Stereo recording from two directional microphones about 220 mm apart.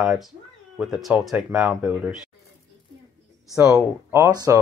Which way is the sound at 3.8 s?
15° right (ahead or behind).